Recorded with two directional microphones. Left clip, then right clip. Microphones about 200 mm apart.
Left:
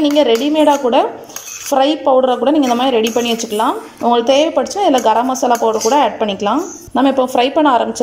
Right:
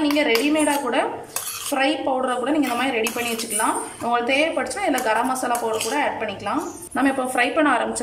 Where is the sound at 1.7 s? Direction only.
30° left (ahead or behind).